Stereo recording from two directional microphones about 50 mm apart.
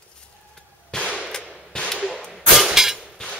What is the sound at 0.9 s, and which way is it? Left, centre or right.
Cap gun, centre.